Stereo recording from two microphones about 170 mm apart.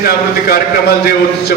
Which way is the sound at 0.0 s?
65° left (ahead or behind).